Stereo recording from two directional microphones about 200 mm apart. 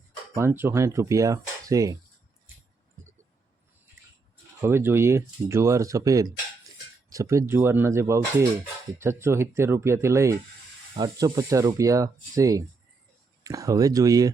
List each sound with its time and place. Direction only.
0.3 s speech: 10° right (ahead or behind)
4.6 s speech: 10° right (ahead or behind)